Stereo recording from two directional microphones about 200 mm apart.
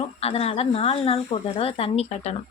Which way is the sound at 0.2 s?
30° left (ahead or behind).